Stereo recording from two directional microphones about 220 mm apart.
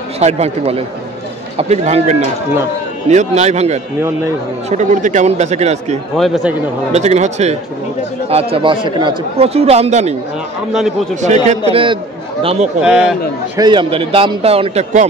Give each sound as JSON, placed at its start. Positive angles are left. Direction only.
{"t": 0.2, "sound": "speech", "side_deg": -30}
{"t": 6.1, "sound": "a man's voice", "side_deg": 0}
{"t": 6.9, "sound": "speech", "side_deg": -30}
{"t": 11.1, "sound": "a man's voice", "side_deg": -30}
{"t": 12.8, "sound": "a man's voice", "side_deg": -5}
{"t": 13.6, "sound": "speech", "side_deg": -20}